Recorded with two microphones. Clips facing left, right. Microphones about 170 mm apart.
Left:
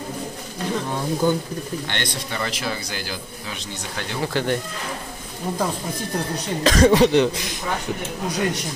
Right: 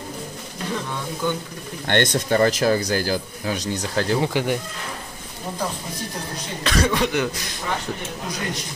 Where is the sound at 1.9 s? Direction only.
50° right (ahead or behind).